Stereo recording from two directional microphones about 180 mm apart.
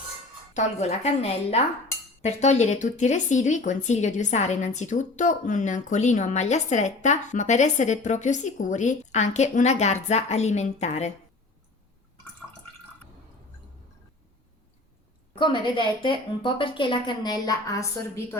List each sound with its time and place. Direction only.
0.5 s speech: 35° left (ahead or behind)
15.4 s a woman's voice: 25° left (ahead or behind)